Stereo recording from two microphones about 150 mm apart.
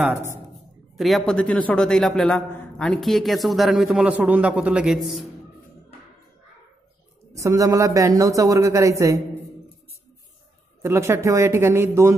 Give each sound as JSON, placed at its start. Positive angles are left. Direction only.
{"t": 0.9, "sound": "a man's voice", "side_deg": 0}
{"t": 7.3, "sound": "a man's voice", "side_deg": -20}
{"t": 10.8, "sound": "speech", "side_deg": -20}